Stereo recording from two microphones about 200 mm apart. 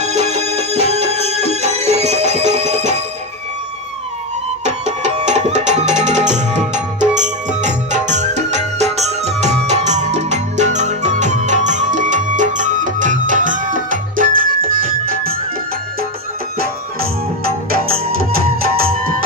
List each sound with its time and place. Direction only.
0.0 s music: 35° right (ahead or behind)
4.6 s music: 35° right (ahead or behind)
17.6 s music: 50° right (ahead or behind)